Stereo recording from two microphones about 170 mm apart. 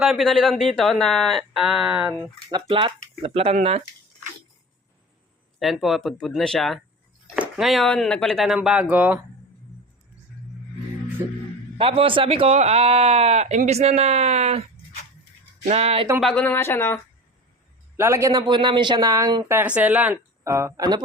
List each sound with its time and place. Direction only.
0.0 s speech: centre (ahead or behind)
2.5 s speech: 30° right (ahead or behind)
5.5 s speech: centre (ahead or behind)
11.8 s speech: 35° right (ahead or behind)
15.7 s speech: 35° right (ahead or behind)
16.2 s speech: 5° left (ahead or behind)
17.9 s speech: 15° right (ahead or behind)
19.5 s speech: 10° right (ahead or behind)